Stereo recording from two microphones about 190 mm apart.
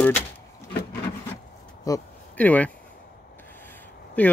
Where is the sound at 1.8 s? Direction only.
15° left (ahead or behind).